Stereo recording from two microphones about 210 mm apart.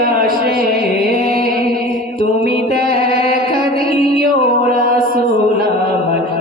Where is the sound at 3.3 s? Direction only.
45° right (ahead or behind).